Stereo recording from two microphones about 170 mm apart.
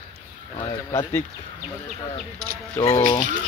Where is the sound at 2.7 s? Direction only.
20° left (ahead or behind).